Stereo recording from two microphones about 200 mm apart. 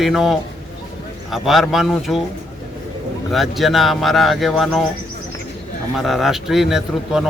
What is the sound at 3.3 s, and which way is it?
Speech, centre (ahead or behind).